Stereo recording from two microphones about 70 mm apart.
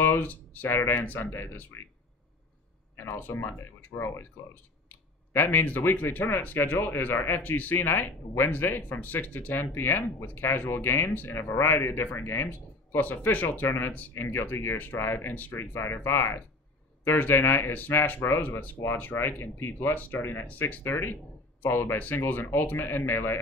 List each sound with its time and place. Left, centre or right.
0.0 s speech: left
3.0 s speech: left
4.8 s speech: left